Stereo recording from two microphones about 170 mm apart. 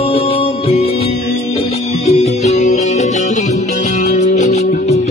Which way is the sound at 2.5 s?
45° left (ahead or behind).